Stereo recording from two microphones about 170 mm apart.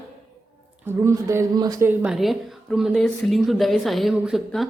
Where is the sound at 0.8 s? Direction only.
15° right (ahead or behind).